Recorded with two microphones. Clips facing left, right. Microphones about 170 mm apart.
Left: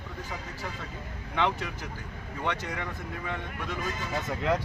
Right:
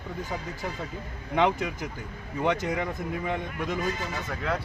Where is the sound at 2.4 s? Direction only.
15° right (ahead or behind).